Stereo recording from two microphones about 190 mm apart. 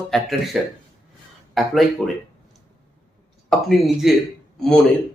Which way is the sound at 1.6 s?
Centre (ahead or behind).